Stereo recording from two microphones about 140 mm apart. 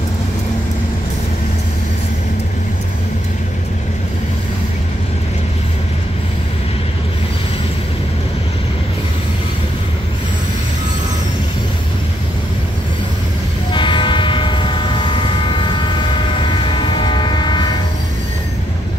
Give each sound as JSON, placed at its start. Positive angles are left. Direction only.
{"t": 13.7, "sound": "train", "side_deg": 35}